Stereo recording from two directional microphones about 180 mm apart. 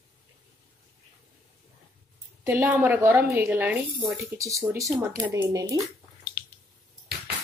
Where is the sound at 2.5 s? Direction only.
10° right (ahead or behind).